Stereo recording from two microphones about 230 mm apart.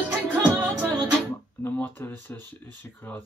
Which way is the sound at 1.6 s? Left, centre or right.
Centre.